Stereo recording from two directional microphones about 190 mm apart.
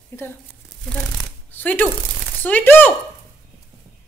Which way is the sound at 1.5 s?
10° left (ahead or behind).